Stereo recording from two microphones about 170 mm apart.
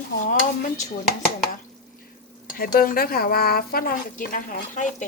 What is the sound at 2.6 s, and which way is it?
A woman's voice, 55° left (ahead or behind).